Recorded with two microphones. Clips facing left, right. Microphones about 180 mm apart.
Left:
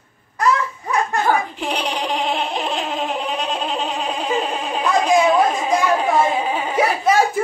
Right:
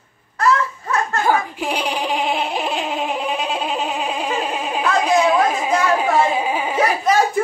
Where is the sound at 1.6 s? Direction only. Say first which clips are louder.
Right 1 dB; 5° right (ahead or behind).